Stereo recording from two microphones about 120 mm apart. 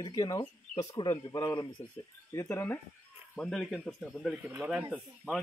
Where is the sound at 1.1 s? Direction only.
25° left (ahead or behind).